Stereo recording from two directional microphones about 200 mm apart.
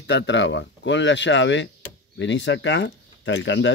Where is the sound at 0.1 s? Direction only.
65° left (ahead or behind).